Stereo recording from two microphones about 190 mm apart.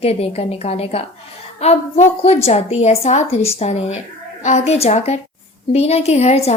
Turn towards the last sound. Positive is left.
turn(degrees=35)  # may be behind; listen again after turning